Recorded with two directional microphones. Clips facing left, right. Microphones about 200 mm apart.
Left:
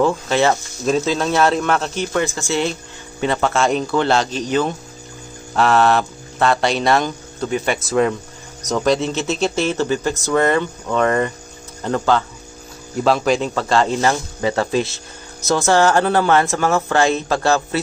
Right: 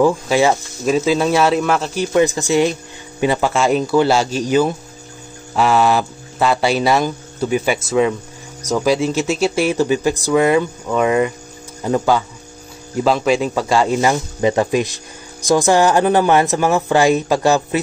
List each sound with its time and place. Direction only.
0.0 s speech: 10° right (ahead or behind)
2.1 s speech: 15° right (ahead or behind)